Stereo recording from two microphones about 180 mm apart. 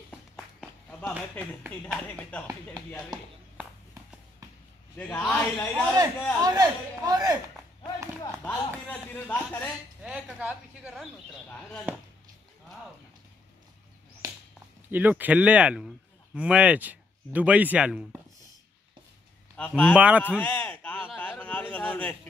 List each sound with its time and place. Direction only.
0.1 s a sound: 10° left (ahead or behind)
2.0 s speech: 10° left (ahead or behind)
3.5 s a sound: 10° right (ahead or behind)
4.9 s speech: 10° left (ahead or behind)
6.4 s a man's voice: 20° right (ahead or behind)
8.5 s speech: 10° left (ahead or behind)
10.0 s speech: 5° right (ahead or behind)
11.4 s speech: 5° left (ahead or behind)
14.2 s a sound: 20° right (ahead or behind)
14.9 s speech: 10° right (ahead or behind)
19.5 s speech: 5° left (ahead or behind)
20.0 s speech: 5° right (ahead or behind)
20.2 s a sound: 10° left (ahead or behind)